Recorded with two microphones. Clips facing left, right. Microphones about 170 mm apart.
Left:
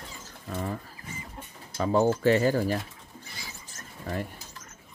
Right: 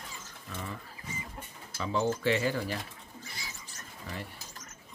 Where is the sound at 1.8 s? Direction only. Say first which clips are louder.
Left 7 dB; 45° left (ahead or behind).